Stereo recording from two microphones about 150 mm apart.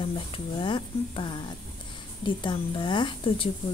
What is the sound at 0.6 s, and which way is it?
A woman's voice, 35° left (ahead or behind).